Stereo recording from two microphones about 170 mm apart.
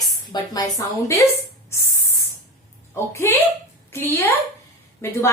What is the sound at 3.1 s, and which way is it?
A woman's voice, 15° left (ahead or behind).